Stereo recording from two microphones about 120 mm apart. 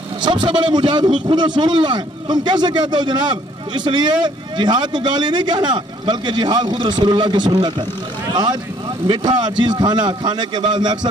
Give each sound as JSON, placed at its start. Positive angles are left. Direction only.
{"t": 0.2, "sound": "a man's voice", "side_deg": -40}